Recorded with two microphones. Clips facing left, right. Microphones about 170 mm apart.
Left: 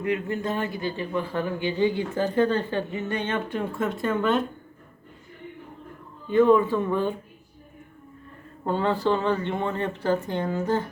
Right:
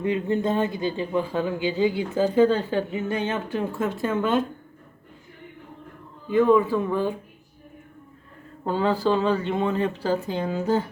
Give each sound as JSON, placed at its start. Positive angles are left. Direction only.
{"t": 0.0, "sound": "a man's voice", "side_deg": -25}
{"t": 6.3, "sound": "speech", "side_deg": -5}
{"t": 8.6, "sound": "speech", "side_deg": -5}